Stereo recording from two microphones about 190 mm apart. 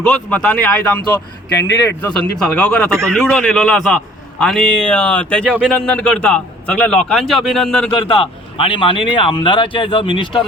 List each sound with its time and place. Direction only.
0.1 s a man's voice: 5° left (ahead or behind)
7.9 s a man's voice: 25° left (ahead or behind)